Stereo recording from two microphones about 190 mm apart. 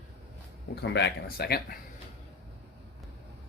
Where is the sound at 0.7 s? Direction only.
65° left (ahead or behind).